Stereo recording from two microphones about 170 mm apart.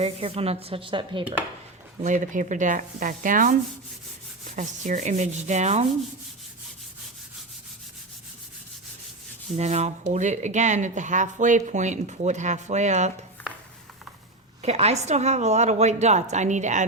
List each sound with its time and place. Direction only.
0.0 s a woman's voice: 35° right (ahead or behind)
2.0 s speech: 45° right (ahead or behind)
9.5 s speech: 40° right (ahead or behind)
14.6 s a woman's voice: 40° right (ahead or behind)